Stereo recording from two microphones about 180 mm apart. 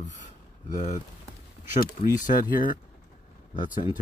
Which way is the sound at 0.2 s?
45° left (ahead or behind).